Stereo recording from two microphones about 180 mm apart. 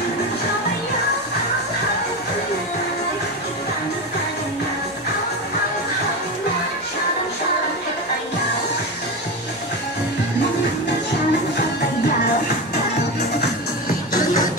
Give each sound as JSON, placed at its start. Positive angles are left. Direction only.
{"t": 13.4, "sound": "music", "side_deg": 50}